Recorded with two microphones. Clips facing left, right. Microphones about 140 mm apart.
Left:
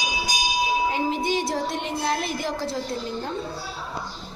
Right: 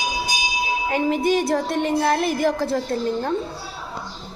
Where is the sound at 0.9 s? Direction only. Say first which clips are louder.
Right 5 dB; 55° right (ahead or behind).